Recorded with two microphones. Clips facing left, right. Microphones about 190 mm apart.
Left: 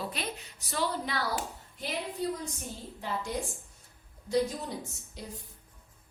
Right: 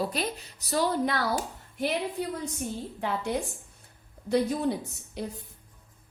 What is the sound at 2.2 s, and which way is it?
A woman's voice, 65° right (ahead or behind).